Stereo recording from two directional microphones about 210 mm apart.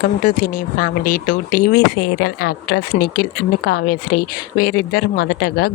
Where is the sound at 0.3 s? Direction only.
40° left (ahead or behind).